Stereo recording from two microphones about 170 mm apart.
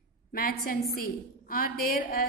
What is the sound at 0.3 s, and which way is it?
A woman's voice, 55° left (ahead or behind).